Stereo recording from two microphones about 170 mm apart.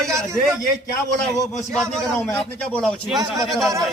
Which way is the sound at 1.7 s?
5° left (ahead or behind).